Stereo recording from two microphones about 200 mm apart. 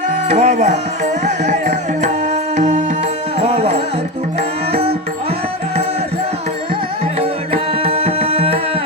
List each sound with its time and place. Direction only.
0.3 s music: 35° right (ahead or behind)
7.2 s music: 30° right (ahead or behind)